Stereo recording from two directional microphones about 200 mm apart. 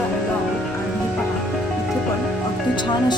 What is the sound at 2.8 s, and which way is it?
Speech, 25° left (ahead or behind).